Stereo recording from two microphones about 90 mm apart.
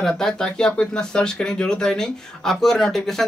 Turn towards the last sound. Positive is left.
turn(degrees=5)  # may be behind; listen again after turning